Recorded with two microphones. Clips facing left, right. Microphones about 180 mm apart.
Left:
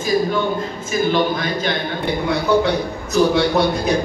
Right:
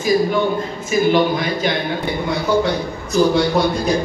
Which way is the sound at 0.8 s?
15° right (ahead or behind).